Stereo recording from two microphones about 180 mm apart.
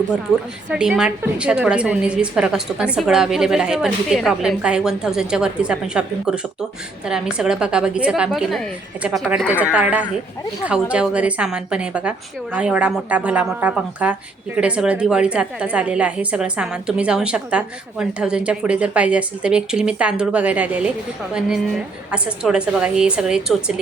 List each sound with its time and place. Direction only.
0.7 s a woman's voice: 5° right (ahead or behind)